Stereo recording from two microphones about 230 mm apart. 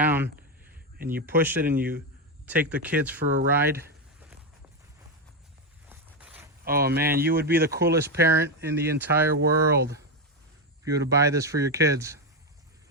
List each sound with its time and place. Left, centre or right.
0.0 s a sound: centre
0.9 s a man's voice: right
2.5 s speech: centre
5.9 s zipper: centre
6.7 s speech: right
8.0 s speech: centre
10.8 s speech: centre